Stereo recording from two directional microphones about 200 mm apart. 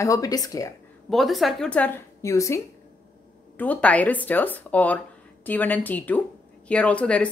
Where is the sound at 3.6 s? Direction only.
5° left (ahead or behind).